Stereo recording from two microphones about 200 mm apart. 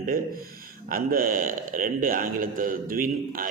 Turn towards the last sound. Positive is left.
turn(degrees=-45)  # may be behind; listen again after turning